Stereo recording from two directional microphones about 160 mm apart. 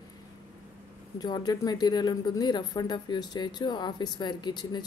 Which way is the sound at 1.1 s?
25° left (ahead or behind).